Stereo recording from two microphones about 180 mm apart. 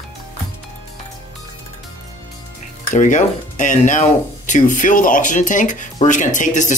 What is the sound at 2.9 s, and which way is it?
Speech, 45° left (ahead or behind).